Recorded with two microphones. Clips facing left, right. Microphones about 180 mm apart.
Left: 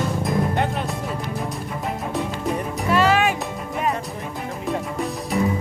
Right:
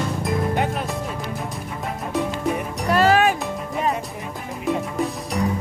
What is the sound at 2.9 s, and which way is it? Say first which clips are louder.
Music: right 2 dB; 40° right (ahead or behind).